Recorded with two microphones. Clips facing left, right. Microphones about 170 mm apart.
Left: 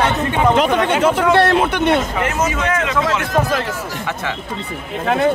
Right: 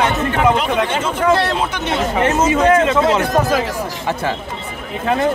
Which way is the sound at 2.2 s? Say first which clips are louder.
Right 6 dB; 30° right (ahead or behind).